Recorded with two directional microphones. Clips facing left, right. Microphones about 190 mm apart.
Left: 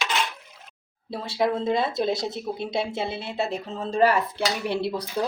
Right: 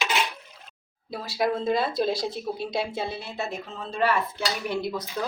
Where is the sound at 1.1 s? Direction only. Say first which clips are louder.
Left 2 dB; 25° left (ahead or behind).